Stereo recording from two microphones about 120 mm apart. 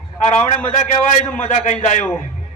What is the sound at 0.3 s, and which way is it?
A man's voice, 80° left.